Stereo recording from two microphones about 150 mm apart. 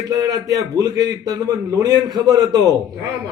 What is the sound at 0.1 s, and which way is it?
A man's voice, 25° right (ahead or behind).